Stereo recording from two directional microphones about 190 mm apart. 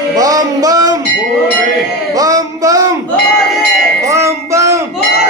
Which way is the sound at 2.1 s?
20° right (ahead or behind).